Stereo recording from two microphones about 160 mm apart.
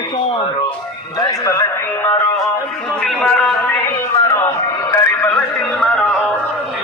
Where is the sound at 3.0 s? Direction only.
5° left (ahead or behind).